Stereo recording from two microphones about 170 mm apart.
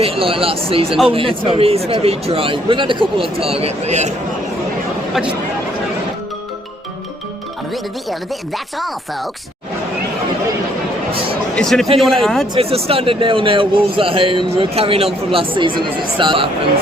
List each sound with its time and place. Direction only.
0.0 s speech: 35° right (ahead or behind)
11.5 s a man's voice: centre (ahead or behind)
12.5 s speech: 35° right (ahead or behind)